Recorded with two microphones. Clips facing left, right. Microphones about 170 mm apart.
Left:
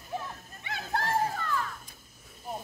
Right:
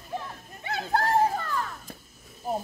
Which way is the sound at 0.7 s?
40° right (ahead or behind).